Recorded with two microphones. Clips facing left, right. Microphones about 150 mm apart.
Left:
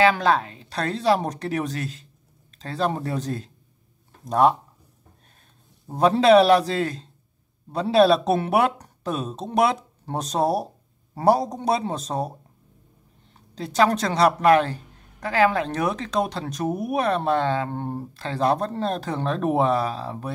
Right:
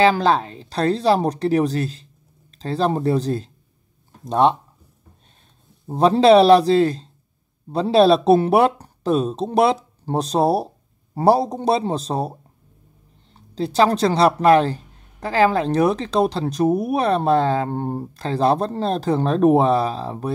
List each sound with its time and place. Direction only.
0.0 s speech: 30° right (ahead or behind)
5.9 s speech: 30° right (ahead or behind)